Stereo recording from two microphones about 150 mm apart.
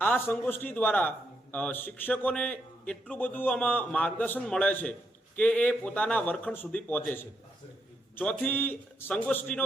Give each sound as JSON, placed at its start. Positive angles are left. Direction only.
{"t": 0.0, "sound": "a man's voice", "side_deg": 15}